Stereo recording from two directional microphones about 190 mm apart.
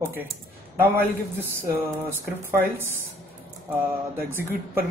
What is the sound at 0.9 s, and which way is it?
Speech, 10° right (ahead or behind).